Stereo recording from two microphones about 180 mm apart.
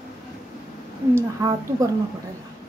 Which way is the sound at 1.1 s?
20° right (ahead or behind).